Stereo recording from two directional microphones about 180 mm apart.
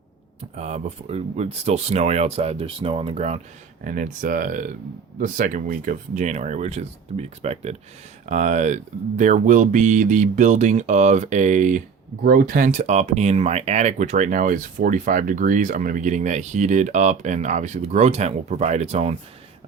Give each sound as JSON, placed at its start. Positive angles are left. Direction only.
{"t": 0.5, "sound": "speech", "side_deg": -40}
{"t": 3.8, "sound": "speech", "side_deg": -45}